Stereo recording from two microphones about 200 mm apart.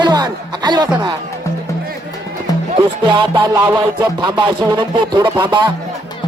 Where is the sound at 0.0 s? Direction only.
20° right (ahead or behind).